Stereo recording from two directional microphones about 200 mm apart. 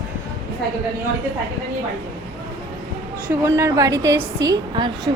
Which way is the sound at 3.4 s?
15° right (ahead or behind).